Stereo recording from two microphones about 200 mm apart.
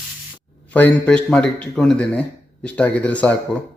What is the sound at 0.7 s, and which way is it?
A man's voice, 10° left (ahead or behind).